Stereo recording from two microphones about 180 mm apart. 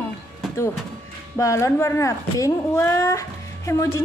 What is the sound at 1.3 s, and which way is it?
Speech, 15° left (ahead or behind).